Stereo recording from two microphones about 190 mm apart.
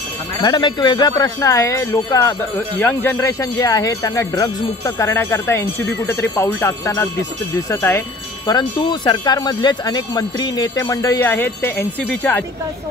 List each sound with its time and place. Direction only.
0.4 s speech: 25° left (ahead or behind)